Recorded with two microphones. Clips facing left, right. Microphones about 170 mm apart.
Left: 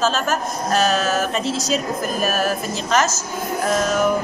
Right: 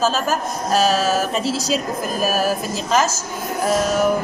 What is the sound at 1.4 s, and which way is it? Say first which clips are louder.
Speech: right 1 dB; 35° right (ahead or behind).